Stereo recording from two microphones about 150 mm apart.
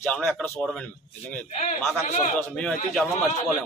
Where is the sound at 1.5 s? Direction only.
50° left (ahead or behind).